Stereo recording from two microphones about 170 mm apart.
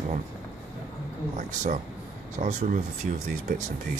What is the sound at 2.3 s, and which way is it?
Speech, 45° right (ahead or behind).